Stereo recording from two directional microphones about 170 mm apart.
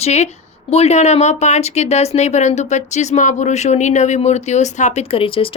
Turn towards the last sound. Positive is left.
turn(degrees=30)  # may be behind; listen again after turning